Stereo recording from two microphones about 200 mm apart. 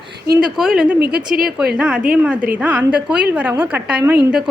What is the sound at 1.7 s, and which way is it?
A woman's voice, 5° right (ahead or behind).